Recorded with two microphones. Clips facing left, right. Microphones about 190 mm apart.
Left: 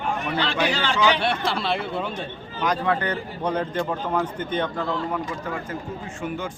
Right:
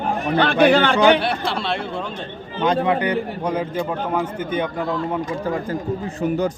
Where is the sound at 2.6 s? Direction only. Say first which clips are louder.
Right 5 dB; 20° right (ahead or behind).